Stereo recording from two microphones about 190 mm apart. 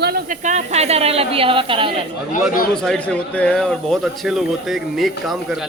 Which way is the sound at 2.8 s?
5° left (ahead or behind).